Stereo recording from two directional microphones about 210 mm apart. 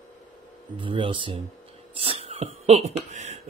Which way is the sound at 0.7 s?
25° right (ahead or behind).